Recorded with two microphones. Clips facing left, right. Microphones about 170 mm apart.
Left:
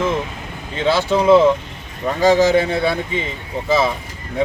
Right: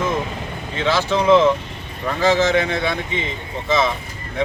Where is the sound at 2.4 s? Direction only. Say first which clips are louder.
Left 3 dB; 35° left (ahead or behind).